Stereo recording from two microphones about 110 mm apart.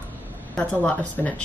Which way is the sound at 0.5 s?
10° left (ahead or behind).